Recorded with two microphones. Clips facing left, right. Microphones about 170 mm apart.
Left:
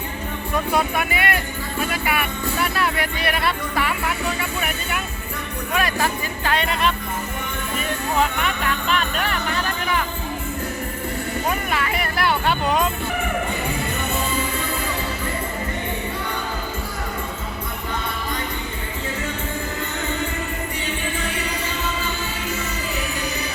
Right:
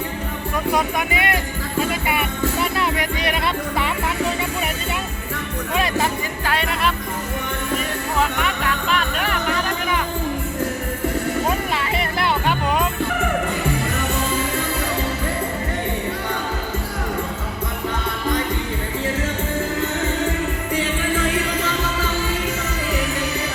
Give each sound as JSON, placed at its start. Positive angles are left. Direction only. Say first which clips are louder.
{"t": 0.5, "sound": "speech", "louder": "even", "side_deg": -15}
{"t": 1.8, "sound": "music", "louder": "right 2 dB", "side_deg": -25}
{"t": 2.6, "sound": "speech", "louder": "left 2 dB", "side_deg": -20}
{"t": 5.7, "sound": "speech", "louder": "right 1 dB", "side_deg": -20}
{"t": 6.4, "sound": "music", "louder": "left 1 dB", "side_deg": -5}
{"t": 8.9, "sound": "music", "louder": "even", "side_deg": -5}
{"t": 11.7, "sound": "music", "louder": "right 1 dB", "side_deg": -25}